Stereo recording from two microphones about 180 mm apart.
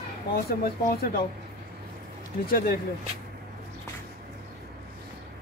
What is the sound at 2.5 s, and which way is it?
Speech, 55° left (ahead or behind).